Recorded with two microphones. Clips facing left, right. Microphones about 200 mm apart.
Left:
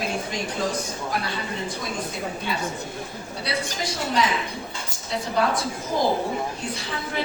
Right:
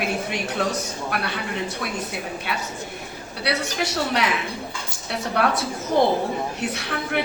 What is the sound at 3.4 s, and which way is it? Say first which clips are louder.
A man's voice: right 4 dB; 70° right (ahead or behind).